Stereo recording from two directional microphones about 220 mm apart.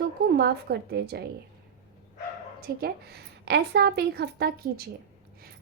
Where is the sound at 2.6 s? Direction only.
45° right (ahead or behind).